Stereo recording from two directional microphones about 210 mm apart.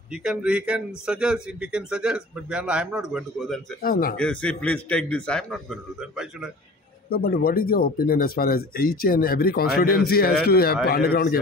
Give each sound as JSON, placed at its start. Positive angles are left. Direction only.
{"t": 0.1, "sound": "a man's voice", "side_deg": -5}
{"t": 3.8, "sound": "speech", "side_deg": 40}
{"t": 4.2, "sound": "a man's voice", "side_deg": 5}
{"t": 7.1, "sound": "speech", "side_deg": 45}